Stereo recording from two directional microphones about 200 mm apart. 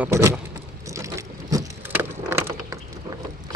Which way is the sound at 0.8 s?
15° right (ahead or behind).